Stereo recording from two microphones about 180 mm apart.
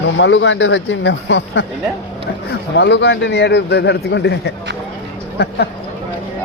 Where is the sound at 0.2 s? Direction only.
90° left.